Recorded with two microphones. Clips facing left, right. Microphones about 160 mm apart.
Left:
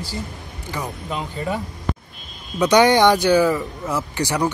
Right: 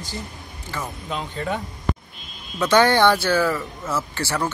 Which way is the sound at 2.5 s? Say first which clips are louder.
Left 3 dB; 15° left (ahead or behind).